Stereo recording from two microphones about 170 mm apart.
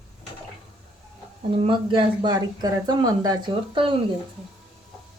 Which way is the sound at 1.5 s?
30° right (ahead or behind).